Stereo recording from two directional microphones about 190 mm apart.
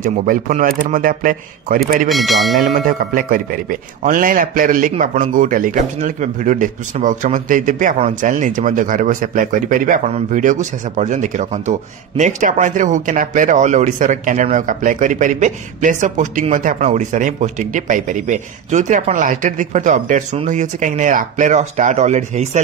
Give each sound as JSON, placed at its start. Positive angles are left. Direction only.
{"t": 0.0, "sound": "a man's voice", "side_deg": -45}
{"t": 2.0, "sound": "speech", "side_deg": 0}
{"t": 2.6, "sound": "a man's voice", "side_deg": -45}